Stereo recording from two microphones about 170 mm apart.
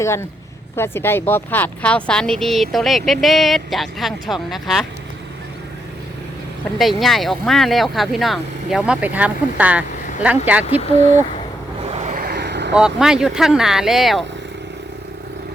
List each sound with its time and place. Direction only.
0.0 s speech: 15° left (ahead or behind); by 4.9 s centre (ahead or behind)
6.7 s speech: 5° left (ahead or behind)
11.9 s vehicle: 40° right (ahead or behind)
12.2 s vehicle: 70° right (ahead or behind); by 12.7 s 85° right
12.7 s speech: 5° right (ahead or behind)